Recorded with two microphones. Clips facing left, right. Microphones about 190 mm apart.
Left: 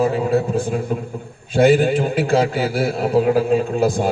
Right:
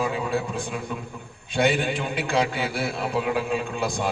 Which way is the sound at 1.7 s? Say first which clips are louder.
Left 10 dB; 40° left (ahead or behind).